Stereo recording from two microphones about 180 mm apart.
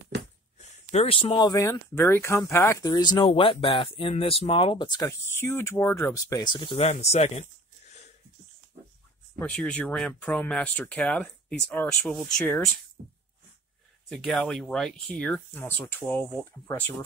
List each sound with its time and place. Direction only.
0.6 s speech: 40° left (ahead or behind)
5.3 s speech: 15° left (ahead or behind)
6.8 s speech: 40° left (ahead or behind)
9.4 s speech: 5° left (ahead or behind)
14.0 s speech: centre (ahead or behind)